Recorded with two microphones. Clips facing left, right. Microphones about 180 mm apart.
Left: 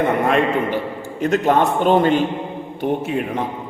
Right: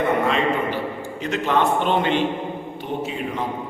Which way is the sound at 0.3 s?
55° left (ahead or behind).